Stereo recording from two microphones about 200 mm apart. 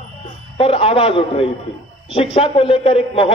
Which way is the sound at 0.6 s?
30° left (ahead or behind).